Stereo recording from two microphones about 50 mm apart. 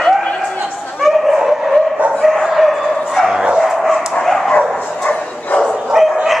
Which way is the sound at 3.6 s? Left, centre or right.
Centre.